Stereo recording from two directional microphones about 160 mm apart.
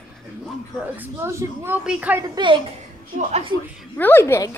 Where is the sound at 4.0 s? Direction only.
15° left (ahead or behind).